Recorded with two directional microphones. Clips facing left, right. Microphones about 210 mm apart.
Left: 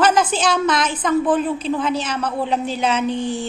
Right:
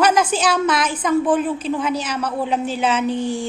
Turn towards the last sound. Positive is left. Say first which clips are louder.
# right 1 dB
turn(degrees=-10)  # may be behind; listen again after turning